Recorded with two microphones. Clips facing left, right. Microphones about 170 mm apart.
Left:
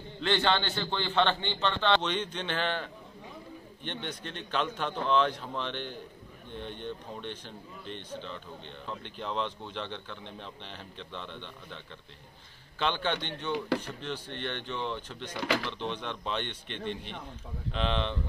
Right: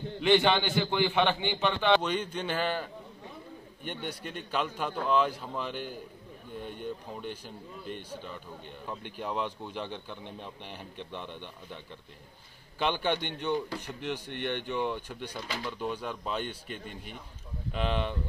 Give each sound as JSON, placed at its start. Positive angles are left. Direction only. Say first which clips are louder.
{"t": 0.2, "sound": "speech", "louder": "right 4 dB", "side_deg": -15}
{"t": 15.3, "sound": "speech", "louder": "left 7 dB", "side_deg": 85}
{"t": 15.8, "sound": "a man's voice", "louder": "right 1 dB", "side_deg": -5}